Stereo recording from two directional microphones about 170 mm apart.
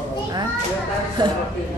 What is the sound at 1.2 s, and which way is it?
Speech, 25° right (ahead or behind).